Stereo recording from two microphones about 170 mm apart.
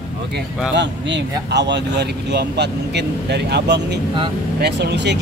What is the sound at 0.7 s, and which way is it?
Speech, 90° right.